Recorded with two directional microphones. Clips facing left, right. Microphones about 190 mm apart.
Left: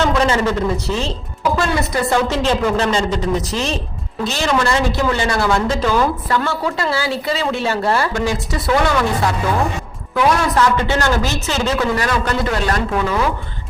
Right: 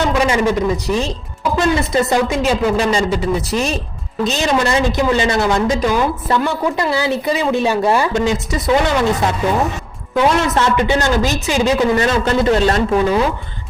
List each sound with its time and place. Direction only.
0.2 s a woman's voice: 10° right (ahead or behind)
2.3 s a woman's voice: 10° right (ahead or behind)